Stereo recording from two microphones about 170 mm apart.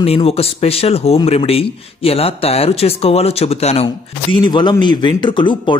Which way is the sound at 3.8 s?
25° left (ahead or behind).